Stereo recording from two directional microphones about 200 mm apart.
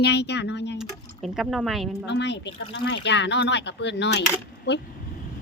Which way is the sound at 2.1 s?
60° left (ahead or behind).